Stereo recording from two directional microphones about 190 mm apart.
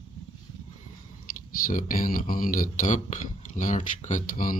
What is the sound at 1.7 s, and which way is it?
Speech, 45° left (ahead or behind).